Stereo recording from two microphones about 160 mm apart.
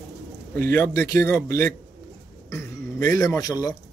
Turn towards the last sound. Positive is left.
turn(degrees=20)  # may be behind; listen again after turning